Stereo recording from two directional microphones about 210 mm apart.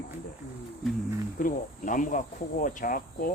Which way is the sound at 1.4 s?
40° left (ahead or behind).